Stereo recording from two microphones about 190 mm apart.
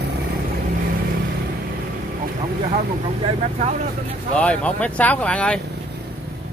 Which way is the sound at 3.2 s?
35° right (ahead or behind).